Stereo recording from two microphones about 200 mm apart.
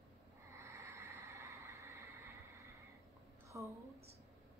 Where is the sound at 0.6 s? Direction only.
15° right (ahead or behind).